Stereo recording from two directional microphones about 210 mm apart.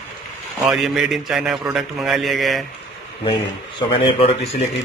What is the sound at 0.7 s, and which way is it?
A man's voice, centre (ahead or behind).